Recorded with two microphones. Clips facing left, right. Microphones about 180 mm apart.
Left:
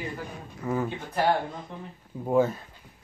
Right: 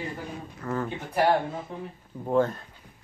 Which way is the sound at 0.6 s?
10° left (ahead or behind).